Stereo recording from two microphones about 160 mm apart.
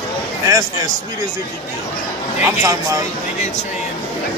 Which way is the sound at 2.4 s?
20° right (ahead or behind).